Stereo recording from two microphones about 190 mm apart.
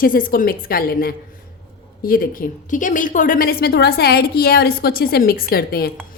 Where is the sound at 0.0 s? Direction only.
45° left (ahead or behind).